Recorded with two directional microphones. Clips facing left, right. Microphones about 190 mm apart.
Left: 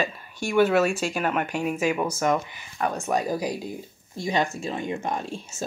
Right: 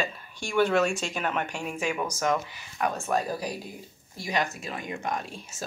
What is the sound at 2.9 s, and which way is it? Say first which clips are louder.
Speech: left 3 dB; 20° left (ahead or behind).